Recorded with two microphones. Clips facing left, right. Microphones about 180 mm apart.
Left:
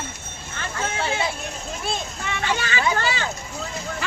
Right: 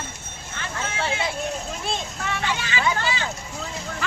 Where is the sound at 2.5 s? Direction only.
50° left (ahead or behind).